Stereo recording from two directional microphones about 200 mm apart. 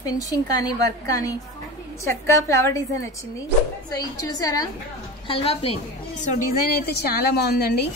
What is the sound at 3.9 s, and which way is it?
A woman's voice, 20° left (ahead or behind).